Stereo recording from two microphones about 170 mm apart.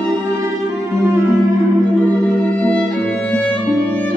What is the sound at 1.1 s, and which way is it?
Music, 20° right (ahead or behind).